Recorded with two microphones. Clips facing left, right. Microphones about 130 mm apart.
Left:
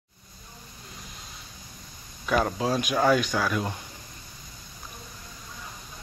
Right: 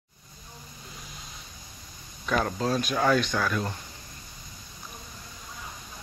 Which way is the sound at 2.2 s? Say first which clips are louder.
Left 2 dB; 10° left (ahead or behind).